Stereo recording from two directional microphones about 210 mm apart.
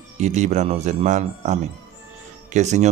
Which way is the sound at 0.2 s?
35° right (ahead or behind).